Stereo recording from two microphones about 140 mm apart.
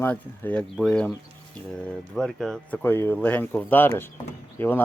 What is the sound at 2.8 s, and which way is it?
Speech, 15° left (ahead or behind).